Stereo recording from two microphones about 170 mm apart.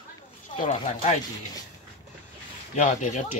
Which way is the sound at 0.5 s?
45° left (ahead or behind).